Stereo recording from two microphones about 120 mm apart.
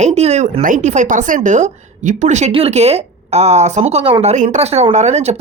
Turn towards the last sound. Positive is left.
turn(degrees=-70)  # may be behind; listen again after turning